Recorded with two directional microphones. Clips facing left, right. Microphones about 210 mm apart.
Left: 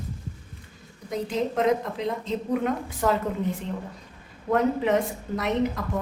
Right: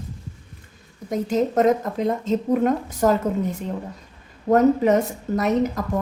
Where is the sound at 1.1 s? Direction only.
45° right (ahead or behind).